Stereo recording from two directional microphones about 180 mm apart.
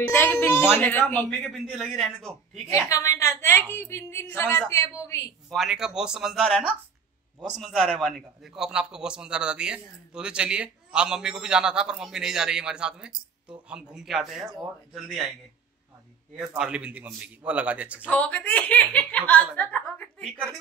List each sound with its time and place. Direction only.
0.0 s speech: 10° left (ahead or behind)
2.7 s speech: 15° left (ahead or behind)
5.5 s a man's voice: centre (ahead or behind)
7.6 s a man's voice: centre (ahead or behind)
16.3 s a man's voice: 5° right (ahead or behind)
18.0 s speech: 10° left (ahead or behind)
19.5 s a sound: 10° left (ahead or behind)